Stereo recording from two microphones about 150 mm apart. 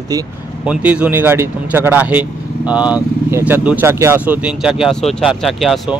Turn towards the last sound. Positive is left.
turn(degrees=0)  # may be behind; listen again after turning